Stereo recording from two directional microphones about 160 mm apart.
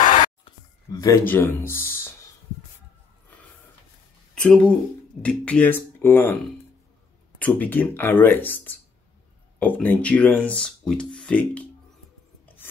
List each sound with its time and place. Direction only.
0.0 s whispering: 55° left (ahead or behind)
0.8 s speech: 20° left (ahead or behind)
4.4 s speech: 5° left (ahead or behind)
7.3 s speech: 10° left (ahead or behind)